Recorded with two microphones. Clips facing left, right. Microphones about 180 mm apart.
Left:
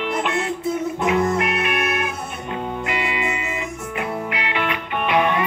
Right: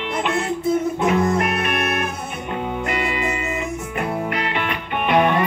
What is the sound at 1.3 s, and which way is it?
Music, 45° right (ahead or behind).